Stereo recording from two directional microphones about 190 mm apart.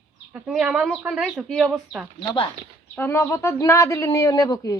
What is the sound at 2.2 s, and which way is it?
Speech, 25° left (ahead or behind).